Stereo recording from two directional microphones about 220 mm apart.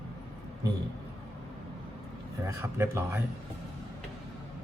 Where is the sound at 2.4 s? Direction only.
10° right (ahead or behind).